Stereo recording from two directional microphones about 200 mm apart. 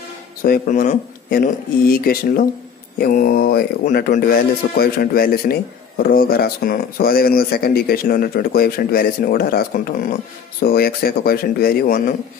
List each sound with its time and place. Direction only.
0.4 s speech: 45° left (ahead or behind)